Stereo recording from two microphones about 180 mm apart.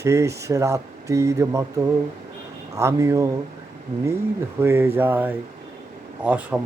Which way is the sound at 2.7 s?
15° right (ahead or behind).